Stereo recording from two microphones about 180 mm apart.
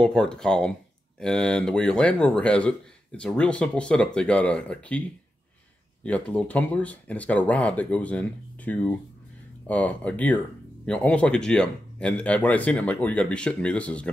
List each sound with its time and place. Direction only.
0.0 s a man's voice: 5° left (ahead or behind)
6.0 s speech: 5° left (ahead or behind)